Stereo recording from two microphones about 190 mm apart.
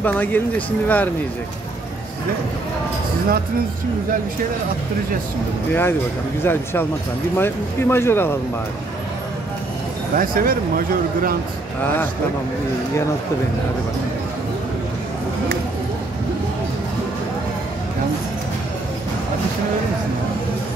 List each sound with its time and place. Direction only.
0.0 s speech: 10° left (ahead or behind)
5.7 s speech: 10° left (ahead or behind)
10.1 s speech: 50° right (ahead or behind)